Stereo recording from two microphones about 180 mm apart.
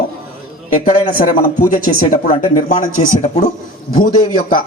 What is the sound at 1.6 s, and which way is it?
Speech, 45° left (ahead or behind).